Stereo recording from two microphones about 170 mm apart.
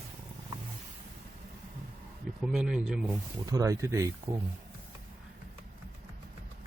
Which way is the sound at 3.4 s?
20° right (ahead or behind).